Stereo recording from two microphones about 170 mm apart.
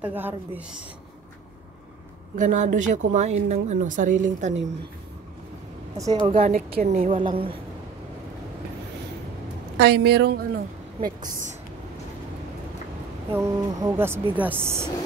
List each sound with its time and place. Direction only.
0.0 s speech: 10° right (ahead or behind)
2.3 s speech: 50° right (ahead or behind)
6.3 s speech: 45° right (ahead or behind)
7.2 s a woman's voice: 30° right (ahead or behind)
9.8 s a woman's voice: 75° right (ahead or behind); by 11.5 s 50° right (ahead or behind)
13.3 s speech: 15° right (ahead or behind)